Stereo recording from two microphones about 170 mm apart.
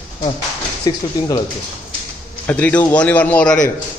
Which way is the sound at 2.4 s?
10° left (ahead or behind).